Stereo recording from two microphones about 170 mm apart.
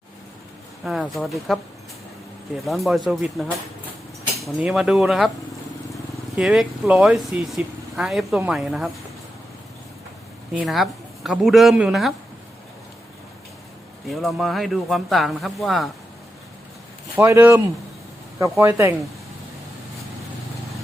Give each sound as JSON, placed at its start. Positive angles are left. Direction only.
{"t": 1.0, "sound": "speech", "side_deg": 0}
{"t": 2.6, "sound": "speech", "side_deg": 0}
{"t": 4.6, "sound": "speech", "side_deg": 0}
{"t": 10.5, "sound": "speech", "side_deg": -5}
{"t": 14.1, "sound": "speech", "side_deg": 0}
{"t": 17.2, "sound": "speech", "side_deg": -15}
{"t": 18.6, "sound": "speech", "side_deg": -15}